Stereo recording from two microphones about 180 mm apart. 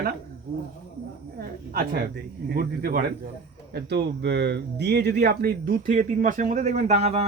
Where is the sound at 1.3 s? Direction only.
60° right (ahead or behind).